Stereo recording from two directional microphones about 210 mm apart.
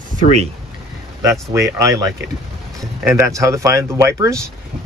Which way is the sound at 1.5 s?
15° right (ahead or behind).